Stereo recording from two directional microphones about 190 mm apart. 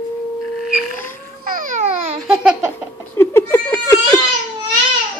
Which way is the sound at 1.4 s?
45° right (ahead or behind).